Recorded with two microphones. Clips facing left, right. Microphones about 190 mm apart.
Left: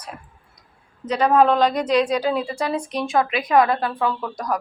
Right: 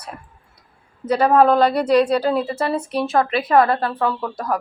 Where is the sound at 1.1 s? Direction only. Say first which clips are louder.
Right 2 dB; 10° right (ahead or behind).